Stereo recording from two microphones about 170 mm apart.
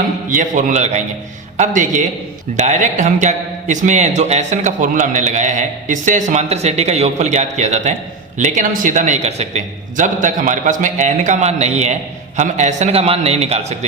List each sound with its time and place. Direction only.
0.3 s a man's voice: 50° right (ahead or behind)